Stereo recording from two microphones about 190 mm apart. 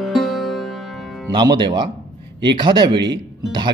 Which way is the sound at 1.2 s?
20° right (ahead or behind).